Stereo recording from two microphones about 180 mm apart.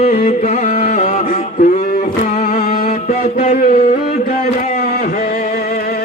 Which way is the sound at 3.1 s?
40° left (ahead or behind).